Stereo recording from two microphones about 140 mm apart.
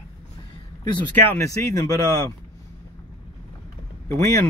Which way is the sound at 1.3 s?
25° left (ahead or behind).